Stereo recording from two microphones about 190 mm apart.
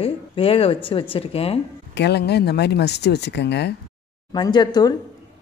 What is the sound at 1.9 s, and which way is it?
Speech, 60° left (ahead or behind).